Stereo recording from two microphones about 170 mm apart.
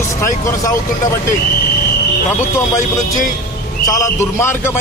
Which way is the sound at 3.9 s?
15° left (ahead or behind).